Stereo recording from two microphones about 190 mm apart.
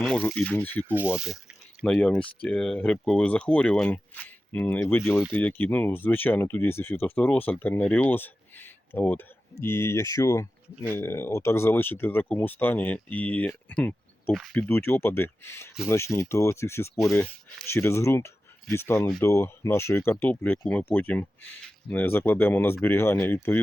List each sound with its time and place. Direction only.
0.0 s speech: 5° left (ahead or behind)
0.9 s speech: 10° right (ahead or behind); by 16.9 s 15° left (ahead or behind)
17.0 s speech: centre (ahead or behind)